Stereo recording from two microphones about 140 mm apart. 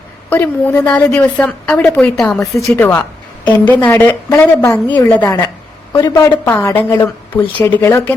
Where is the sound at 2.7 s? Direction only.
20° left (ahead or behind).